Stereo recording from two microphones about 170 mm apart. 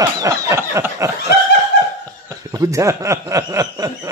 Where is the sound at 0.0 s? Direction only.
20° right (ahead or behind).